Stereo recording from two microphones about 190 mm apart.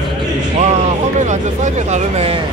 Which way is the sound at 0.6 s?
40° right (ahead or behind).